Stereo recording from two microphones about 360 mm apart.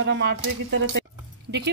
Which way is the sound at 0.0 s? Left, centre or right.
Right.